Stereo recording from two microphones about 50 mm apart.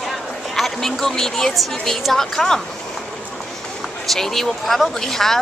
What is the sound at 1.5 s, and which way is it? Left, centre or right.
A woman's voice, centre.